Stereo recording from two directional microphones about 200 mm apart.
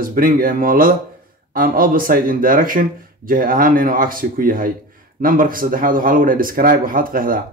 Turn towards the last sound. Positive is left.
turn(degrees=-45)  # may be behind; listen again after turning